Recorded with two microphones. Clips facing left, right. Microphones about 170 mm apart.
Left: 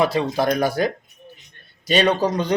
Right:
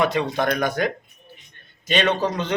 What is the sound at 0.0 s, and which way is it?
Speech, 35° left (ahead or behind).